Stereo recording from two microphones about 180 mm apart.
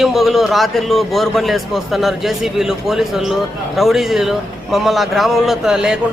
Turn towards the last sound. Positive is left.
turn(degrees=-5)  # may be behind; listen again after turning